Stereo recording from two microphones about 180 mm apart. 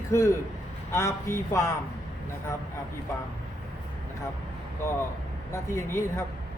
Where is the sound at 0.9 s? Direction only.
15° left (ahead or behind).